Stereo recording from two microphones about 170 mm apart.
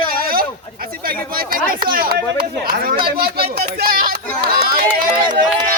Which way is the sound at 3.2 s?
65° right (ahead or behind).